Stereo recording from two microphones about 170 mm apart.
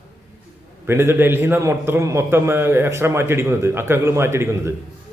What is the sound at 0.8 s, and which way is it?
A man's voice, 15° right (ahead or behind).